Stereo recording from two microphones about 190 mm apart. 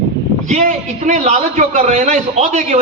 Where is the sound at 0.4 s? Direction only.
35° right (ahead or behind).